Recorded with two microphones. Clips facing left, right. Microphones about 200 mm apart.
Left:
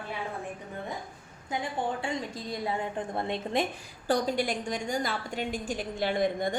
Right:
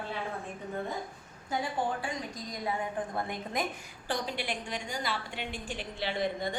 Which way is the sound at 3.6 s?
30° left (ahead or behind).